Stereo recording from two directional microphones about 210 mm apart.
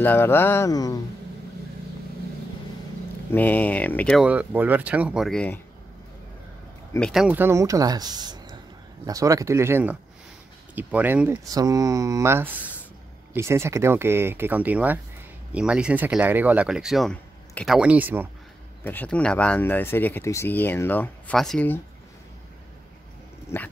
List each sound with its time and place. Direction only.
0.0 s speech: 10° left (ahead or behind)
3.3 s speech: 10° left (ahead or behind)
4.3 s speech: 5° right (ahead or behind)
7.1 s speech: 5° right (ahead or behind)
18.9 s speech: 5° left (ahead or behind)
23.5 s speech: 10° left (ahead or behind)